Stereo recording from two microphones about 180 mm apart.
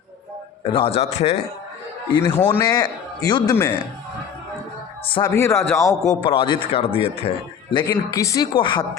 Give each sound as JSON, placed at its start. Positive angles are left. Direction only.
{"t": 0.6, "sound": "a man's voice", "side_deg": 30}
{"t": 2.4, "sound": "speech", "side_deg": 10}
{"t": 2.6, "sound": "a man's voice", "side_deg": 20}
{"t": 5.0, "sound": "a man's voice", "side_deg": 25}
{"t": 5.3, "sound": "a man's voice", "side_deg": 15}
{"t": 7.9, "sound": "a man's voice", "side_deg": 20}